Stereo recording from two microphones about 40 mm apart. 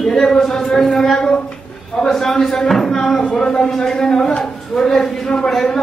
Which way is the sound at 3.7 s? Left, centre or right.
Centre.